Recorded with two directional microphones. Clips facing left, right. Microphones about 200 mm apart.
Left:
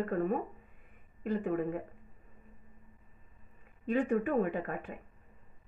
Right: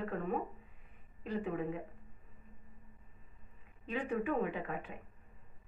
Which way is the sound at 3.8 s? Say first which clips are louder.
Left 6 dB; 45° left (ahead or behind).